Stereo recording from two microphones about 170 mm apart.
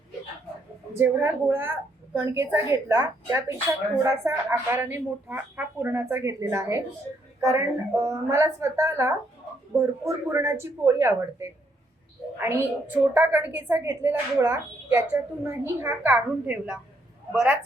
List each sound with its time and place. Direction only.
0.9 s a woman's voice: 15° right (ahead or behind)